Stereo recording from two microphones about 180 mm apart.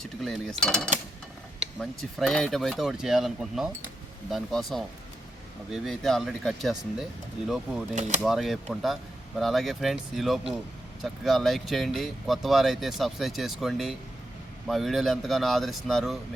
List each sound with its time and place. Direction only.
0.0 s speech: centre (ahead or behind)
7.9 s speech: 40° right (ahead or behind)
8.2 s speech: centre (ahead or behind)